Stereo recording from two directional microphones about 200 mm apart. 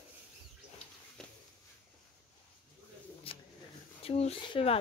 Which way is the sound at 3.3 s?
30° left (ahead or behind).